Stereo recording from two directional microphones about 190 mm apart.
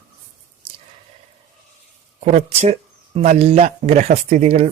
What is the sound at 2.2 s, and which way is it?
Speech, 35° right (ahead or behind).